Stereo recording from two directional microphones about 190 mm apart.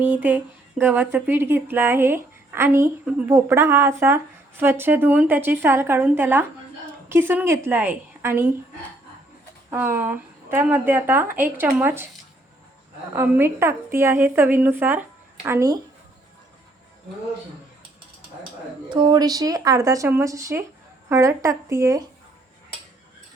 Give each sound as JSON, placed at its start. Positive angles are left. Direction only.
{"t": 0.0, "sound": "speech", "side_deg": -10}
{"t": 9.6, "sound": "speech", "side_deg": -10}
{"t": 13.1, "sound": "speech", "side_deg": -10}
{"t": 18.9, "sound": "speech", "side_deg": -25}